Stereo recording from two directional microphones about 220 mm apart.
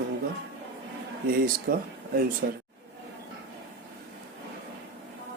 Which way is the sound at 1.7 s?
40° right (ahead or behind).